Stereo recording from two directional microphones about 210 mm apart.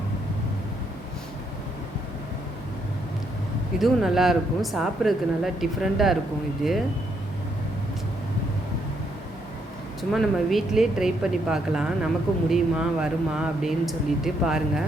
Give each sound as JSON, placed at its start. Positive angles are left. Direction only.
{"t": 3.8, "sound": "speech", "side_deg": 0}
{"t": 10.0, "sound": "speech", "side_deg": 0}